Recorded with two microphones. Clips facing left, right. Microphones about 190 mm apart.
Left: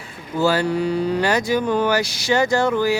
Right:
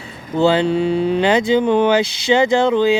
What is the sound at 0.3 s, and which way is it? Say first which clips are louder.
Speech: right 4 dB; 20° right (ahead or behind).